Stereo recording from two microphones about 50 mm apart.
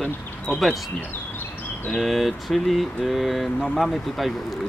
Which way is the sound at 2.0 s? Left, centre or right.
Centre.